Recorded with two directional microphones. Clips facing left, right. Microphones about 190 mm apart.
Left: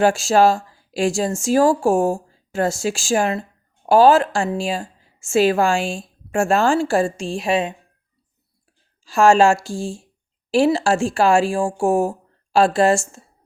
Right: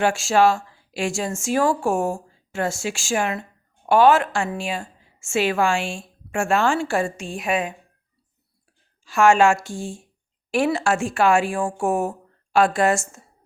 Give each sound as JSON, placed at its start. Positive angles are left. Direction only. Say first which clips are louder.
{"t": 0.0, "sound": "a woman's voice", "louder": "left 3 dB", "side_deg": 35}
{"t": 9.0, "sound": "a woman's voice", "louder": "left 2 dB", "side_deg": 35}